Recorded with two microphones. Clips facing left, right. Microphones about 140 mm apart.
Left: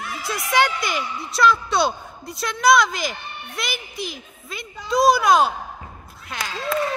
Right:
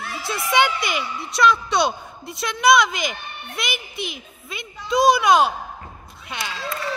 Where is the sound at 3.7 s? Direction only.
40° left (ahead or behind).